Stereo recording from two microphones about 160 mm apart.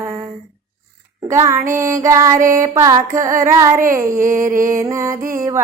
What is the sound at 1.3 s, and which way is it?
Music, 15° right (ahead or behind).